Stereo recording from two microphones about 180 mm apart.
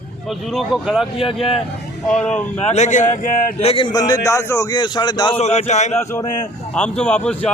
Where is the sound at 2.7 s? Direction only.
40° left (ahead or behind); by 5.3 s 25° left (ahead or behind).